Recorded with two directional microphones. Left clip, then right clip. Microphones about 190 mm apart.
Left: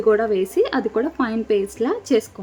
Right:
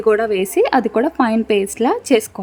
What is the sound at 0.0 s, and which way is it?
Speech, 35° right (ahead or behind).